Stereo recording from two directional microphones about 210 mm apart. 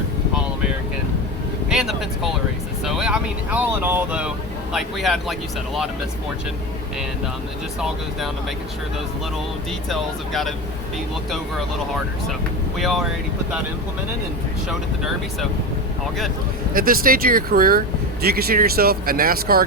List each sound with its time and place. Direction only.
1.7 s speech: centre (ahead or behind)
7.8 s speech: centre (ahead or behind)
9.9 s speech: centre (ahead or behind)
12.3 s speech: centre (ahead or behind)
14.7 s speech: centre (ahead or behind)
16.7 s speech: 45° right (ahead or behind)